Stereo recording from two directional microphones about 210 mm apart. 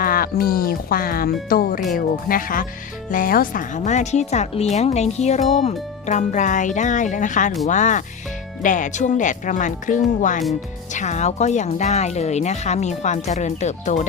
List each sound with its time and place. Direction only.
0.0 s speech: 45° left (ahead or behind)